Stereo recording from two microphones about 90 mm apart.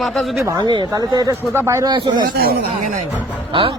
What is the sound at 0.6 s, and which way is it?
Speech, 55° right (ahead or behind).